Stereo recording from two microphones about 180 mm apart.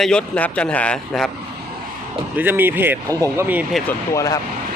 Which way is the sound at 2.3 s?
10° right (ahead or behind).